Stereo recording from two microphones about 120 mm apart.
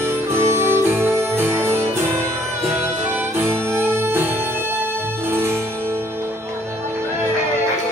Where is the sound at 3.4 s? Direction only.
20° right (ahead or behind).